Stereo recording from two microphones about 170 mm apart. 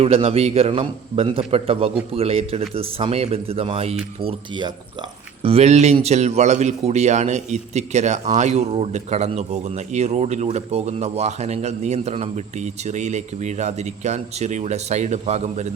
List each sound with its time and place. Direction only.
0.0 s a man's voice: 35° right (ahead or behind)